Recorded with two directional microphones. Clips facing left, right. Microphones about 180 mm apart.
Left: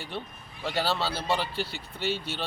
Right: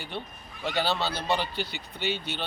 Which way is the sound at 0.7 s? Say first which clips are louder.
Even; 5° left (ahead or behind).